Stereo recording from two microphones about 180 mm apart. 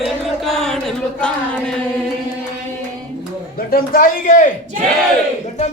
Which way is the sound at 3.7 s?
55° left (ahead or behind).